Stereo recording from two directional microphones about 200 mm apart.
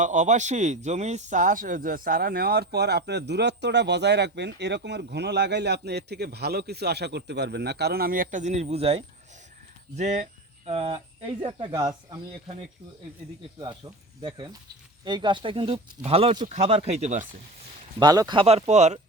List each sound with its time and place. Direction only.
0.0 s speech: 35° right (ahead or behind); by 11.9 s 20° right (ahead or behind)
13.6 s speech: 15° right (ahead or behind); by 17.2 s 35° right (ahead or behind)
18.0 s speech: 20° right (ahead or behind)